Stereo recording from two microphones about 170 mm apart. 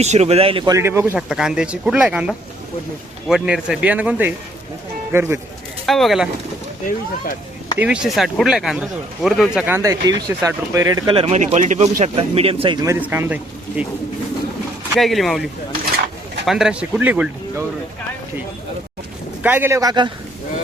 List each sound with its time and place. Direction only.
0.0 s a man's voice: 40° right (ahead or behind); by 1.2 s 15° right (ahead or behind)
1.3 s speech: 5° right (ahead or behind)
5.8 s speech: centre (ahead or behind)
7.8 s speech: 5° right (ahead or behind); by 12.8 s 30° right (ahead or behind)
12.8 s speech: 15° right (ahead or behind)
14.9 s speech: centre (ahead or behind)
16.5 s speech: 5° right (ahead or behind)
19.4 s speech: 10° right (ahead or behind)